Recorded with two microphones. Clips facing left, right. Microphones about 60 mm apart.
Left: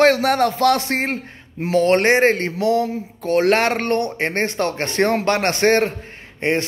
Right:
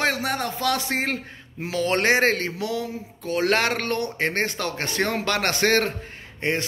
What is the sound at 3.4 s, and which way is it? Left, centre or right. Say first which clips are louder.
Speech: left 2 dB; left.